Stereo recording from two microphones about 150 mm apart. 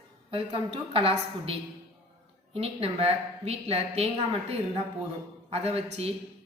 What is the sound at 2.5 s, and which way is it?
A woman's voice, 40° right (ahead or behind).